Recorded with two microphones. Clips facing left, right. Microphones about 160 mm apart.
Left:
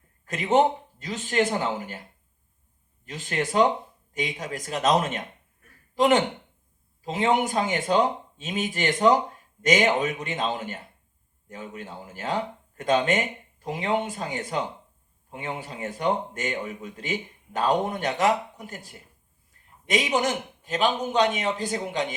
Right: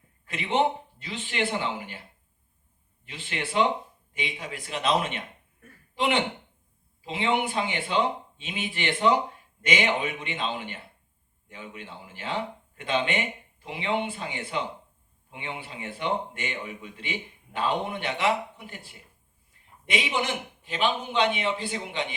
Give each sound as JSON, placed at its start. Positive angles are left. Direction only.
{"t": 0.3, "sound": "a man's voice", "side_deg": 40}